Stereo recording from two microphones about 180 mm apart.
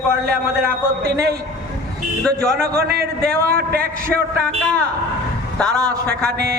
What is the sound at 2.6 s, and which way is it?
A man's voice, 55° right (ahead or behind).